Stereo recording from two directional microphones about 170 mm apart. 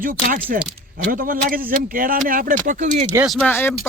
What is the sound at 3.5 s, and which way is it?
Speech, 15° left (ahead or behind).